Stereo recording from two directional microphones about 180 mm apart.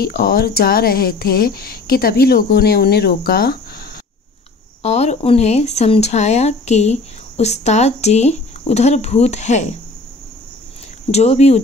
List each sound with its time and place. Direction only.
0.0 s speech: 60° left (ahead or behind)
4.8 s speech: 35° left (ahead or behind)
11.1 s speech: 35° left (ahead or behind)